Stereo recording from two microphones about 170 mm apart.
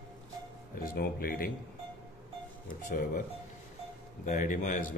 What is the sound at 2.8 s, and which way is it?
Speech, 50° left (ahead or behind).